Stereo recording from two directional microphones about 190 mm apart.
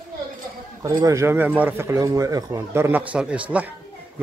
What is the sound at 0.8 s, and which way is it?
Speech, 20° right (ahead or behind).